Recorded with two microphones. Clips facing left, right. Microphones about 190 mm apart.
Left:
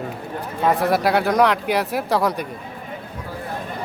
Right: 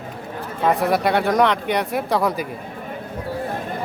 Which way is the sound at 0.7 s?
Centre (ahead or behind).